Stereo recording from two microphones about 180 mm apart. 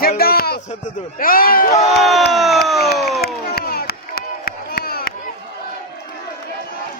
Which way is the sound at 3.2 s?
60° left (ahead or behind).